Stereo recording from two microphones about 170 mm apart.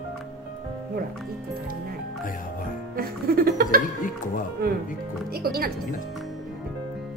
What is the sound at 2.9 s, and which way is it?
Music, 60° right (ahead or behind).